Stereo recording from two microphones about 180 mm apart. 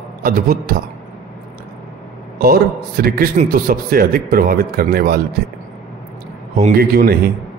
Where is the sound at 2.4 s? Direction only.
55° right (ahead or behind).